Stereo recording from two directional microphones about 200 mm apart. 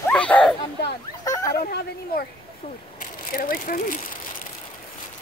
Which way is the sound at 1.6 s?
45° left (ahead or behind).